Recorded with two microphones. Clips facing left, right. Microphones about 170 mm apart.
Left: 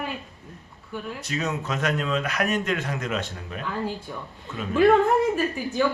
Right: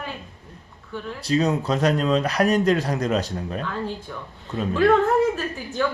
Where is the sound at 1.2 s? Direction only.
35° right (ahead or behind).